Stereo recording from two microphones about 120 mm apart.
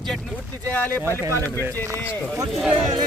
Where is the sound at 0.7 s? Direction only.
15° left (ahead or behind).